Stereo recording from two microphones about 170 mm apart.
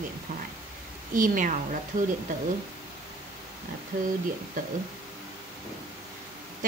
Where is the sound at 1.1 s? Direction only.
50° right (ahead or behind).